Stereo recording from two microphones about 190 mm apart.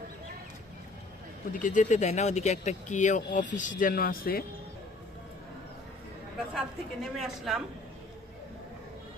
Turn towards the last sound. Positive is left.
turn(degrees=0)  # may be behind; listen again after turning